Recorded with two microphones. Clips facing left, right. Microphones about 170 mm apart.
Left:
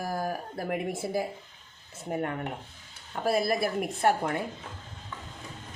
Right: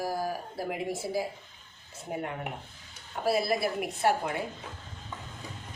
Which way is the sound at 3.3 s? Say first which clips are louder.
Left 1 dB; 50° left (ahead or behind).